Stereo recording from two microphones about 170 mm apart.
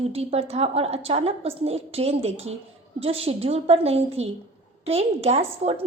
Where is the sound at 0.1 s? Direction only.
35° right (ahead or behind).